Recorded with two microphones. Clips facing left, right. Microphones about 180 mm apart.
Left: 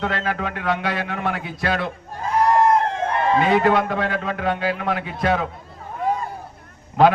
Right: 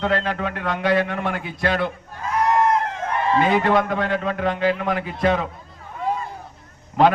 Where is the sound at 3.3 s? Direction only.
Centre (ahead or behind).